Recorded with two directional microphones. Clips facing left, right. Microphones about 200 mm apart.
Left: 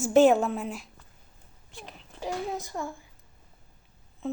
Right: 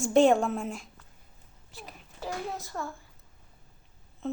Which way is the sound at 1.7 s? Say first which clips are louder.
Left 1 dB; 5° right (ahead or behind).